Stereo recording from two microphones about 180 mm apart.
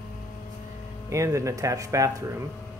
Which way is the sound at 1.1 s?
15° right (ahead or behind).